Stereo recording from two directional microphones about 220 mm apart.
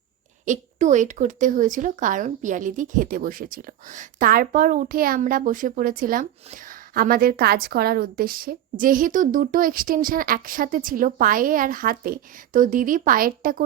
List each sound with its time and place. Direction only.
0.4 s speech: 35° right (ahead or behind)